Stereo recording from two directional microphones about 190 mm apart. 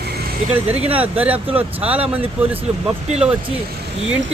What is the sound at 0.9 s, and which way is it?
Speech, 10° right (ahead or behind).